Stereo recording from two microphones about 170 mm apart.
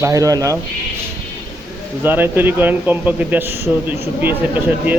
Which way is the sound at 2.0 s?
10° right (ahead or behind).